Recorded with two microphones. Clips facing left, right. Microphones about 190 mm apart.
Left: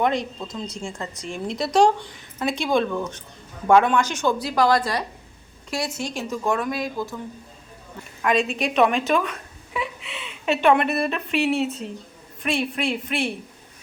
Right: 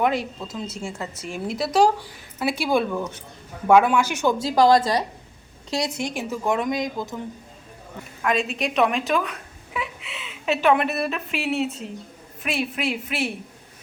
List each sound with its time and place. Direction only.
0.0 s a woman's voice: 5° right (ahead or behind)
4.4 s a woman's voice: 25° right (ahead or behind)
8.2 s a woman's voice: centre (ahead or behind)